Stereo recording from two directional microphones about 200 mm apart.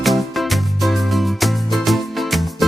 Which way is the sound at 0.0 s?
Centre (ahead or behind).